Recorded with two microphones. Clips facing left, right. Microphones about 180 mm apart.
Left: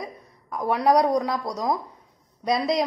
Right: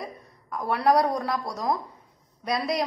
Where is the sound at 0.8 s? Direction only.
20° left (ahead or behind).